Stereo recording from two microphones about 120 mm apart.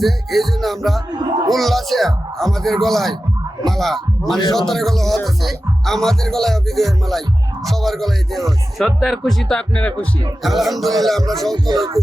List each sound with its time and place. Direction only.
0.0 s speech: centre (ahead or behind)
1.1 s speech: 40° right (ahead or behind)
1.5 s speech: centre (ahead or behind)
11.5 s speech: 35° right (ahead or behind)